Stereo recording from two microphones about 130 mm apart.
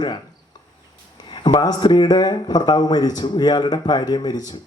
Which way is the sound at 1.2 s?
35° left (ahead or behind).